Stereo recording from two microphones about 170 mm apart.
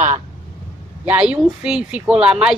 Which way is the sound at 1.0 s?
10° right (ahead or behind).